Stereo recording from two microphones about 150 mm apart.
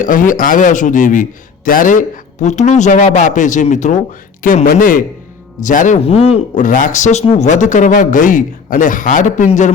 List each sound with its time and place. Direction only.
0.0 s a man's voice: 60° left (ahead or behind)
4.4 s a man's voice: 80° left; by 6.0 s 55° left (ahead or behind)
6.1 s speech: 40° left (ahead or behind)
6.6 s a man's voice: 60° left (ahead or behind)